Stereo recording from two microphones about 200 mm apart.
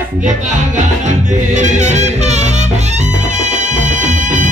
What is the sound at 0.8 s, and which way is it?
Music, 35° right (ahead or behind).